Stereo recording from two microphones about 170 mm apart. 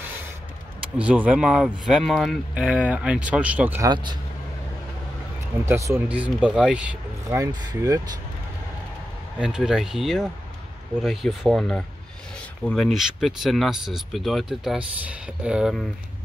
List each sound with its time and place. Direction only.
0.9 s speech: 10° right (ahead or behind)
3.9 s speech: 25° right (ahead or behind)
5.7 s speech: 20° right (ahead or behind)
6.0 s speech: 10° right (ahead or behind)
7.2 s speech: 20° right (ahead or behind)
9.4 s speech: 5° right (ahead or behind)